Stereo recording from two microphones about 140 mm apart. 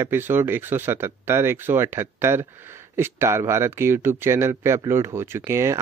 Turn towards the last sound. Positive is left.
turn(degrees=-20)  # may be behind; listen again after turning